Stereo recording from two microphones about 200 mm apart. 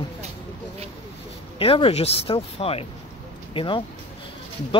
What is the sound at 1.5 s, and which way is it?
Speech, 25° left (ahead or behind).